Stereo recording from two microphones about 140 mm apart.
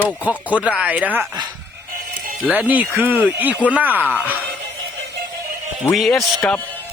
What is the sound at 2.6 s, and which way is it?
A man's voice, 10° right (ahead or behind).